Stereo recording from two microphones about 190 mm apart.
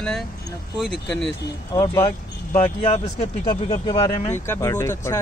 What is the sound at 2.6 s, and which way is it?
Speech, 30° left (ahead or behind).